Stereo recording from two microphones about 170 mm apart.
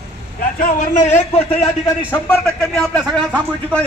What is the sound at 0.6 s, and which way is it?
Speech, 50° left (ahead or behind).